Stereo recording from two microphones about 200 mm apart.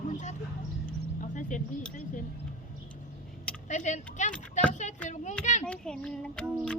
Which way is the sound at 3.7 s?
35° left (ahead or behind).